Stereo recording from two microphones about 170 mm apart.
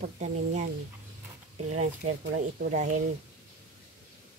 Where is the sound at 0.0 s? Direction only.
45° right (ahead or behind).